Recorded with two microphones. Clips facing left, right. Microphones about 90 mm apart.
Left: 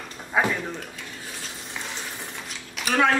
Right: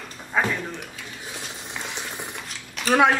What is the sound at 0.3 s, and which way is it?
Speech, 10° left (ahead or behind).